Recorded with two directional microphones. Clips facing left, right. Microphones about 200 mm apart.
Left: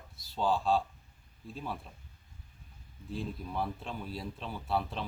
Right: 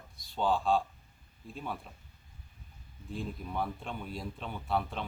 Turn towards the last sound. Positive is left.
turn(degrees=0)  # may be behind; listen again after turning